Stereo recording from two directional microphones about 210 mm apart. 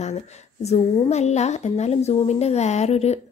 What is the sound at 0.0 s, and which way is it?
Speech, 35° left (ahead or behind).